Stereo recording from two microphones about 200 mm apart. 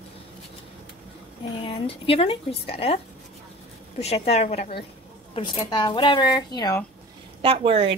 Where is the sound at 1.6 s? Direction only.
30° left (ahead or behind).